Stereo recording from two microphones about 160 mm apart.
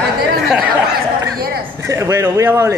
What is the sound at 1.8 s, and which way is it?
Speech, 20° right (ahead or behind).